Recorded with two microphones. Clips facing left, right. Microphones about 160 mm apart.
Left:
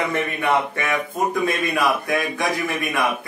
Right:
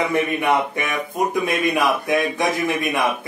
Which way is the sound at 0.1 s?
15° right (ahead or behind).